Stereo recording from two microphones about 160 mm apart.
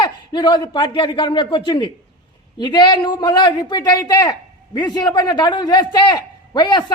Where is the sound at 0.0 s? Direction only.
30° left (ahead or behind).